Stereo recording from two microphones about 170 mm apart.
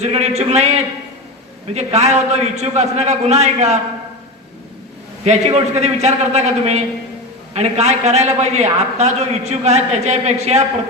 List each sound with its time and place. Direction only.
0.0 s a man's voice: 40° right (ahead or behind)
1.7 s a man's voice: 40° right (ahead or behind)
5.2 s a man's voice: 40° right (ahead or behind)